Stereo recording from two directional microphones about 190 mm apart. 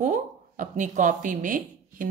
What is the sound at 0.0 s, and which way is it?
A woman's voice, 40° right (ahead or behind).